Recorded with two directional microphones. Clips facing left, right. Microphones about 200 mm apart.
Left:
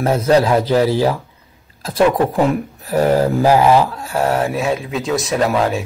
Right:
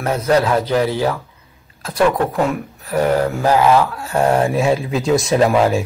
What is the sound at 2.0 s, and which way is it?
Speech, 15° left (ahead or behind).